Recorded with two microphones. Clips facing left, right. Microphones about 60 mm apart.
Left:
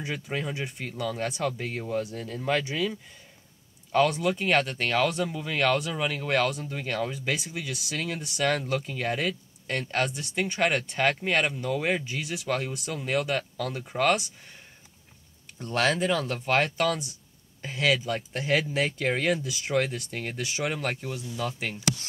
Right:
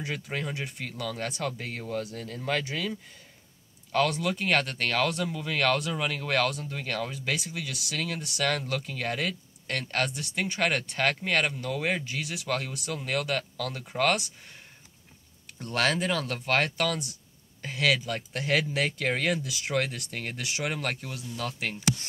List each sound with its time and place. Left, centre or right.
0.0 s speech: centre
13.8 s speech: centre
15.6 s speech: centre
20.8 s speech: centre